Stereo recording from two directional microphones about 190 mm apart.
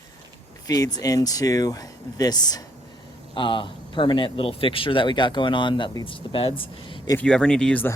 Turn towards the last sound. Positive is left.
turn(degrees=5)  # may be behind; listen again after turning